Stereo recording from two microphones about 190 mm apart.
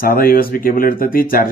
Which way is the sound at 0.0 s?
50° left (ahead or behind).